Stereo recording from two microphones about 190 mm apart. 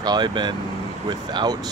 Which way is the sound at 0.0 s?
20° right (ahead or behind).